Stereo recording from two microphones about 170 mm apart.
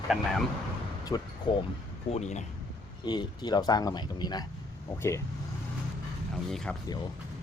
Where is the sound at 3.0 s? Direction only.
25° left (ahead or behind).